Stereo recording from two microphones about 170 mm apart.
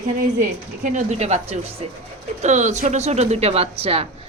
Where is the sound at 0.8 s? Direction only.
45° right (ahead or behind).